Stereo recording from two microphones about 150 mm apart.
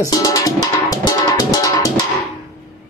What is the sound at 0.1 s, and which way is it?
Drum, 25° left (ahead or behind).